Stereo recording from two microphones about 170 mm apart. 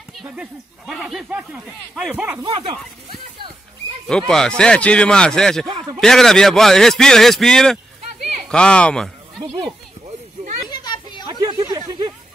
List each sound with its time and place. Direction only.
0.2 s speech: 5° right (ahead or behind)
2.5 s speech: 35° right (ahead or behind)
4.3 s speech: 5° left (ahead or behind)
5.7 s a man's voice: 30° right (ahead or behind)
5.9 s speech: centre (ahead or behind)
10.7 s children playing: 25° left (ahead or behind)
11.2 s a sound: 25° right (ahead or behind)